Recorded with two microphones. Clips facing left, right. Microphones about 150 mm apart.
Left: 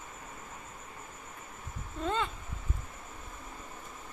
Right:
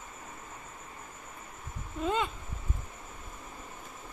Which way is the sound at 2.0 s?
15° right (ahead or behind).